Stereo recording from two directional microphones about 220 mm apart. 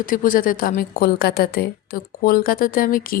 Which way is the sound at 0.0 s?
40° left (ahead or behind).